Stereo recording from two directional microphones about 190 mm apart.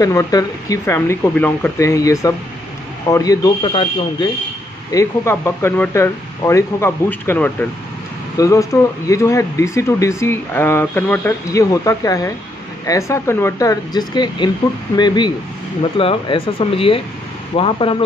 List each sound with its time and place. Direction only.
0.0 s speech: 20° left (ahead or behind)
4.9 s speech: 15° left (ahead or behind)